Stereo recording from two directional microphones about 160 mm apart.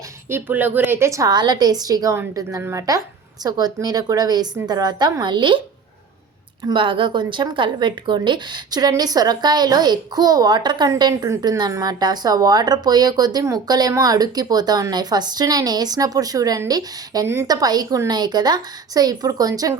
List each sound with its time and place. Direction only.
0.3 s a woman's voice: 15° right (ahead or behind); by 5.5 s 30° right (ahead or behind)
6.7 s a woman's voice: 35° right (ahead or behind)